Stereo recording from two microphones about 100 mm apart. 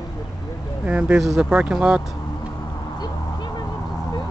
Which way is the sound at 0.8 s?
15° right (ahead or behind).